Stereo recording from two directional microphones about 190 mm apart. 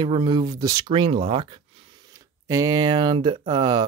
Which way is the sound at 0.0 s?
20° right (ahead or behind).